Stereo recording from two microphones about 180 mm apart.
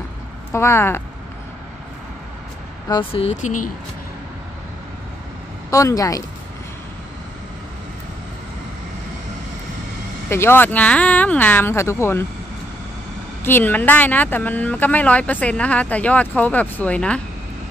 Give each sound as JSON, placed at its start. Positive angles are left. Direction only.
{"t": 0.5, "sound": "speech", "side_deg": 15}
{"t": 2.9, "sound": "speech", "side_deg": 30}
{"t": 5.7, "sound": "speech", "side_deg": 15}
{"t": 10.3, "sound": "speech", "side_deg": 15}
{"t": 13.4, "sound": "speech", "side_deg": 10}